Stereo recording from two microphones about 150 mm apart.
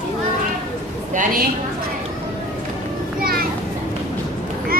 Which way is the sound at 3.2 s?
80° right.